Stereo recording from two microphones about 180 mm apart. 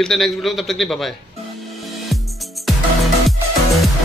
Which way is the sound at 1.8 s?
Centre (ahead or behind).